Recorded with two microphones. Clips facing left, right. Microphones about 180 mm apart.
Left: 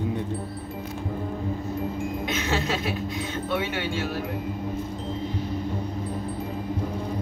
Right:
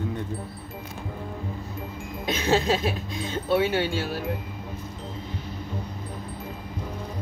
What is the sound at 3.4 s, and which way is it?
Speech, 35° right (ahead or behind).